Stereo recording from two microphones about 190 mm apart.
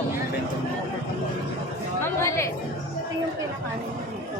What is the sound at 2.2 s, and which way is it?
Speech, 15° left (ahead or behind).